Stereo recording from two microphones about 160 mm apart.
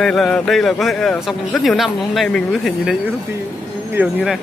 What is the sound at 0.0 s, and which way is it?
A man's voice, 5° left (ahead or behind).